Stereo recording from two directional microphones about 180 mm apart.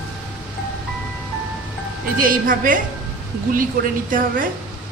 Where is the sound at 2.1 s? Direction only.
50° right (ahead or behind).